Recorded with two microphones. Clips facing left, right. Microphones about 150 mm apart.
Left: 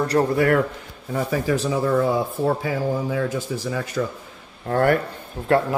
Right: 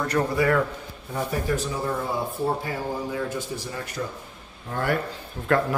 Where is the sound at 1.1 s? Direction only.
90° left.